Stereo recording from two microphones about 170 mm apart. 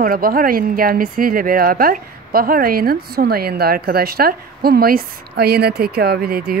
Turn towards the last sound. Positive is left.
turn(degrees=-65)  # may be behind; listen again after turning